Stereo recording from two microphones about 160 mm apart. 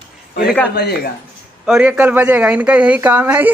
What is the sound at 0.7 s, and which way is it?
Speech, 85° left.